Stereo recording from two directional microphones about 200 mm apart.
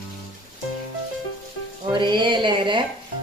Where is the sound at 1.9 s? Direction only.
25° right (ahead or behind).